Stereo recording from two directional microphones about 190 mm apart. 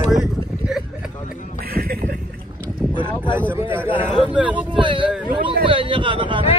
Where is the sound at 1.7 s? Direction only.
55° right (ahead or behind).